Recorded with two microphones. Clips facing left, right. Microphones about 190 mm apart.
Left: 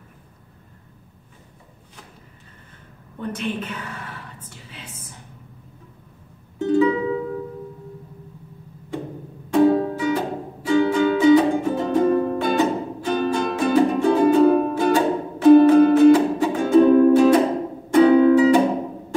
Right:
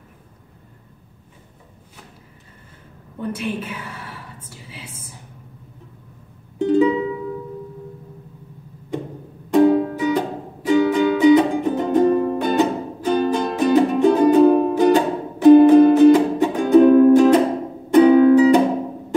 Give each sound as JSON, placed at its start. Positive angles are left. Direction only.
{"t": 3.2, "sound": "a woman's voice", "side_deg": -10}
{"t": 4.6, "sound": "a sound", "side_deg": -10}
{"t": 6.6, "sound": "music", "side_deg": -20}
{"t": 9.5, "sound": "music", "side_deg": -15}